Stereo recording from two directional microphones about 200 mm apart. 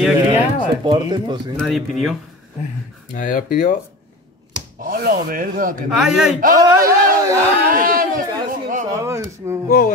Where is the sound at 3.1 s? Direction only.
40° left (ahead or behind).